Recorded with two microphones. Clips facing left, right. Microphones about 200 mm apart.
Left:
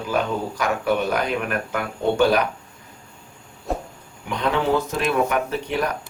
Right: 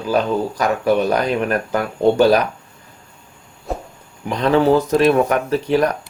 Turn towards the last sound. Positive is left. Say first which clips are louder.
# right 7 dB
turn(degrees=-40)  # may be behind; listen again after turning